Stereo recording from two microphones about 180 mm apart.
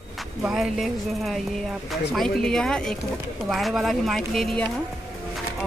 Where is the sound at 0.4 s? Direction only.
5° right (ahead or behind).